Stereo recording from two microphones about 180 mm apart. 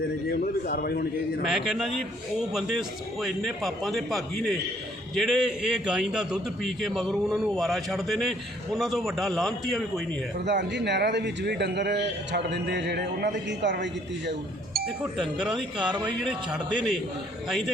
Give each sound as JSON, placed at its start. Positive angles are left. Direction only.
{"t": 0.3, "sound": "a man's voice", "side_deg": 60}
{"t": 1.5, "sound": "a man's voice", "side_deg": 0}
{"t": 10.4, "sound": "a man's voice", "side_deg": -75}
{"t": 14.3, "sound": "speech", "side_deg": -60}
{"t": 15.0, "sound": "a man's voice", "side_deg": -5}